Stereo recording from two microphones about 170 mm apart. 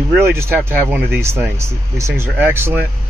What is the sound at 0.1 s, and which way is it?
Speech, 15° right (ahead or behind).